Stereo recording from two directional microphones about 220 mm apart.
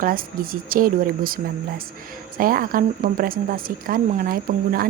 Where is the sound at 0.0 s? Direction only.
40° right (ahead or behind).